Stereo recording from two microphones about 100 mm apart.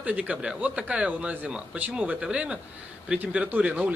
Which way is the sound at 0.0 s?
15° right (ahead or behind).